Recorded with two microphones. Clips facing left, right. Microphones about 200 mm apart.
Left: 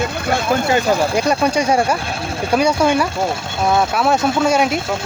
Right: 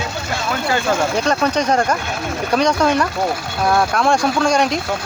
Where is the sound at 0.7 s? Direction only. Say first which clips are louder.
Even; 15° left (ahead or behind).